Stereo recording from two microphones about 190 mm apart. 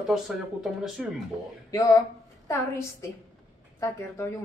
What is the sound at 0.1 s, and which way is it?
Speech, centre (ahead or behind).